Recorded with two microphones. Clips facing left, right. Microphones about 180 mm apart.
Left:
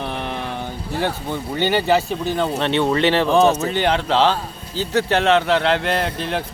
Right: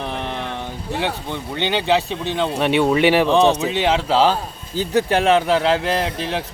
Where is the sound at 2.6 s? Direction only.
10° right (ahead or behind).